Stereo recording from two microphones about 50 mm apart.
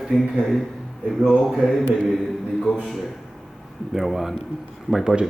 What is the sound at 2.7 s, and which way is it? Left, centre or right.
Speech, left.